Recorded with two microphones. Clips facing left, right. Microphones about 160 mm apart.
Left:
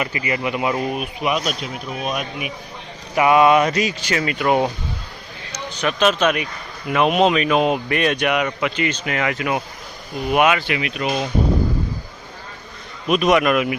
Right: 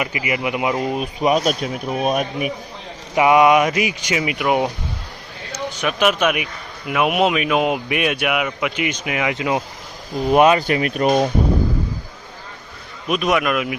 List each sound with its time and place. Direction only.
0.0 s speech: 15° right (ahead or behind); by 2.5 s 45° right (ahead or behind)
3.2 s speech: 15° right (ahead or behind)
10.2 s speech: 35° right (ahead or behind)
13.1 s a man's voice: centre (ahead or behind)